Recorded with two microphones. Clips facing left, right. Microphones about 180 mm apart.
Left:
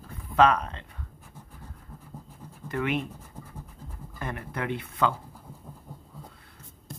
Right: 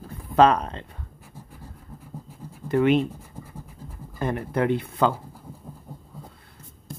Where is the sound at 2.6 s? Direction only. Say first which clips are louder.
Right 9 dB; 30° right (ahead or behind).